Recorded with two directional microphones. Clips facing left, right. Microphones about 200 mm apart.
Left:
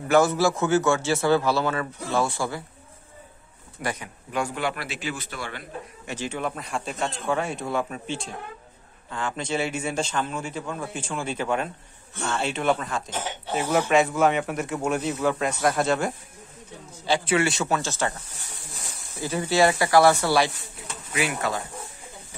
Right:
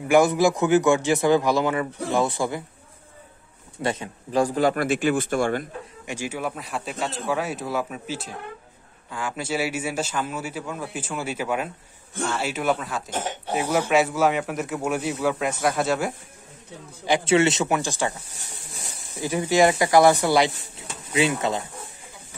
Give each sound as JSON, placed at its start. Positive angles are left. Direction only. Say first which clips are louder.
{"t": 0.1, "sound": "a man's voice", "louder": "right 2 dB", "side_deg": -15}
{"t": 3.8, "sound": "speech", "louder": "right 4 dB", "side_deg": -25}
{"t": 6.0, "sound": "a man's voice", "louder": "right 1 dB", "side_deg": -10}
{"t": 17.0, "sound": "a man's voice", "louder": "right 4 dB", "side_deg": -20}